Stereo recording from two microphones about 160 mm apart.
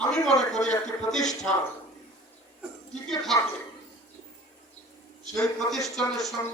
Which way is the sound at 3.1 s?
Centre (ahead or behind).